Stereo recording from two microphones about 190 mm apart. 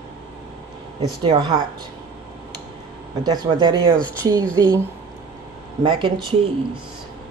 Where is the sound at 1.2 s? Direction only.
25° right (ahead or behind).